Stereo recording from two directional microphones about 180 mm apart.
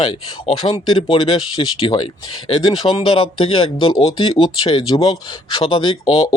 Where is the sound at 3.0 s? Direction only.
30° left (ahead or behind).